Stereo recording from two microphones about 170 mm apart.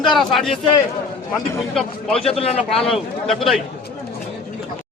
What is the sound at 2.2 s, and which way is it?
Speech, 35° left (ahead or behind).